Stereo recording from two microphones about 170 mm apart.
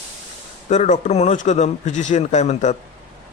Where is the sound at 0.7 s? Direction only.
45° left (ahead or behind).